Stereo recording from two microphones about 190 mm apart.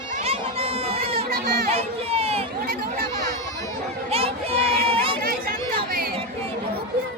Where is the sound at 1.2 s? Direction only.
50° right (ahead or behind).